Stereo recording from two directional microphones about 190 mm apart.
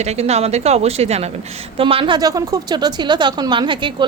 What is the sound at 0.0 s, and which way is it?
A woman's voice, 35° right (ahead or behind).